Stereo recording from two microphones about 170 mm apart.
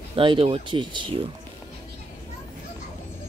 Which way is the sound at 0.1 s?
30° right (ahead or behind).